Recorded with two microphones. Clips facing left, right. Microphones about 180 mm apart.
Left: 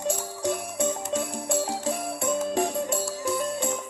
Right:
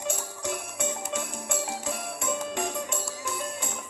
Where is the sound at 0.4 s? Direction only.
35° left (ahead or behind).